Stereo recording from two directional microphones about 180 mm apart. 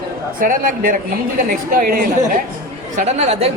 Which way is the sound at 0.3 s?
50° right (ahead or behind).